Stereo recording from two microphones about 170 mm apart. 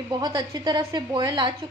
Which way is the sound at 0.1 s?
25° right (ahead or behind).